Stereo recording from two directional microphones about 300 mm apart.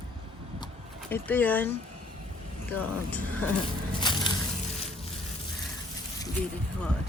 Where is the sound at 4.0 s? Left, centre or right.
Centre.